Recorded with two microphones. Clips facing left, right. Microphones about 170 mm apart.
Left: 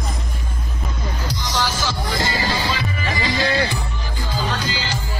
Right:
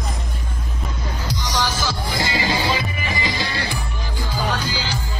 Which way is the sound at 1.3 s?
15° right (ahead or behind).